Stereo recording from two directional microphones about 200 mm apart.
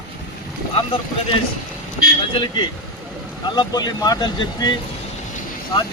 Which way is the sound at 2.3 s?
25° left (ahead or behind).